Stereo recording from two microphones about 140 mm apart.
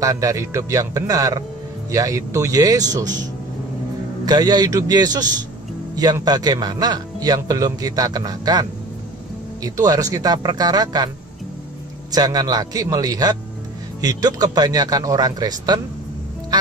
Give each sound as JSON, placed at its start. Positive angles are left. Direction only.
{"t": 0.0, "sound": "speech", "side_deg": -25}
{"t": 4.3, "sound": "speech", "side_deg": -30}
{"t": 12.1, "sound": "speech", "side_deg": -30}